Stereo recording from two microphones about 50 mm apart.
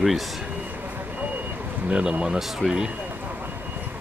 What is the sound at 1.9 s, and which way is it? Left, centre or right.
A man's voice, centre.